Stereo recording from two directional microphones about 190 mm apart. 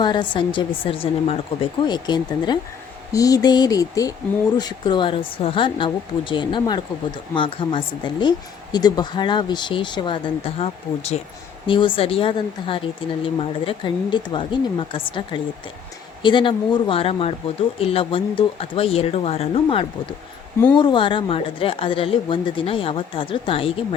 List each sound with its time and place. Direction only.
0.0 s a woman's voice: 25° left (ahead or behind)